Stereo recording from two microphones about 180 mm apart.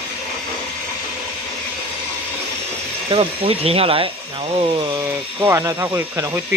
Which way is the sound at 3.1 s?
30° right (ahead or behind).